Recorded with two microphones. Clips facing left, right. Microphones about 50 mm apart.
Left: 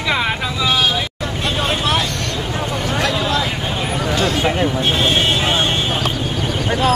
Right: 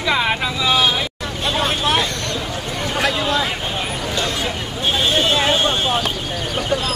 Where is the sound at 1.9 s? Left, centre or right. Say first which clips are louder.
Even; right.